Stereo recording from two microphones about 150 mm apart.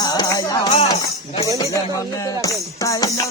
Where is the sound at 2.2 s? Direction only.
20° left (ahead or behind).